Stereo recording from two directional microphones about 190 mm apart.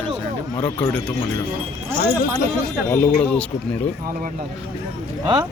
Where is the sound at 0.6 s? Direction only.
10° left (ahead or behind).